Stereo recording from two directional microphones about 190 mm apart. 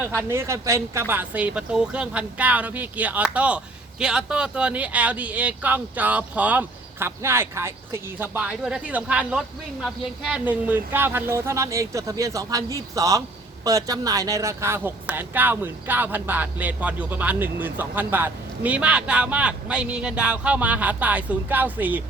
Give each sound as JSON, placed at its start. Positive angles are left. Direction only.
{"t": 0.3, "sound": "speech", "side_deg": -15}